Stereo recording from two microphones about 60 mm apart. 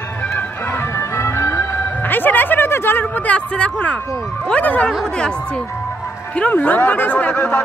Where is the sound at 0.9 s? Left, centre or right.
Left.